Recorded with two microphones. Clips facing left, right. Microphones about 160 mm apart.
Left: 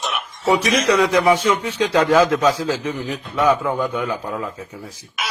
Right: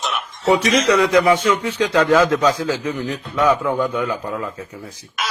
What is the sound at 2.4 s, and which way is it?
Speech, 5° left (ahead or behind).